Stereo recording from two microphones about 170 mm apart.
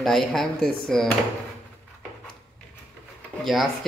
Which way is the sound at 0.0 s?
Centre (ahead or behind).